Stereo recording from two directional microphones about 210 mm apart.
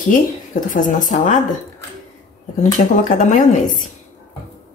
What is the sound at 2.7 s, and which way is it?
Speech, 35° left (ahead or behind).